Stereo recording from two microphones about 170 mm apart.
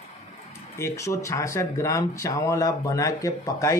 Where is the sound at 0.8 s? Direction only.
15° left (ahead or behind).